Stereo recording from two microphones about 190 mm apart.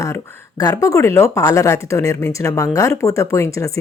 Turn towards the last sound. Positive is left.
turn(degrees=15)  # may be behind; listen again after turning